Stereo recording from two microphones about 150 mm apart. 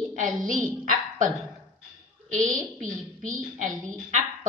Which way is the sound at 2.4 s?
60° right (ahead or behind).